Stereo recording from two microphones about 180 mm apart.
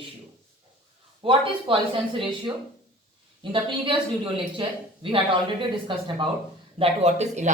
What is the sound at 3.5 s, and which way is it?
A woman's voice, 30° right (ahead or behind).